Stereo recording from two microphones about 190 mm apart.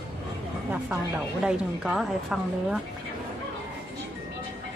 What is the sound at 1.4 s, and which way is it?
A woman's voice, 5° right (ahead or behind).